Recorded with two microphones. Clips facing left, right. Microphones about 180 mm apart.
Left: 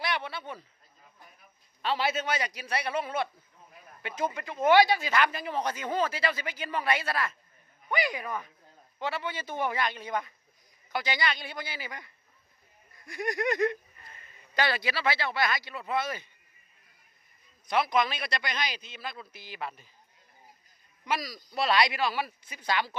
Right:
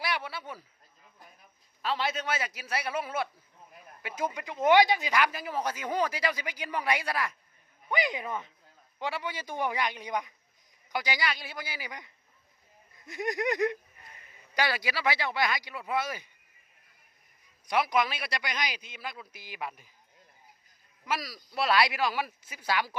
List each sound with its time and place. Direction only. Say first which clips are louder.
0.0 s a sound: left 1 dB; 5° right (ahead or behind)
1.8 s a man's voice: left 2 dB; 5° left (ahead or behind); by 8.4 s 25° right (ahead or behind)
9.0 s speech: left 1 dB; 15° right (ahead or behind)
17.7 s speech: left 1 dB; 10° right (ahead or behind)
21.0 s speech: left 1 dB; 5° right (ahead or behind)